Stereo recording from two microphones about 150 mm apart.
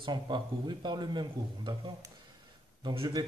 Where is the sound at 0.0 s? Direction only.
30° right (ahead or behind).